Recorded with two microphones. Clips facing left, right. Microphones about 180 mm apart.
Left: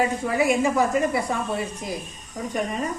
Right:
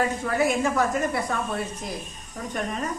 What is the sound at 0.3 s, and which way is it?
Speech, centre (ahead or behind).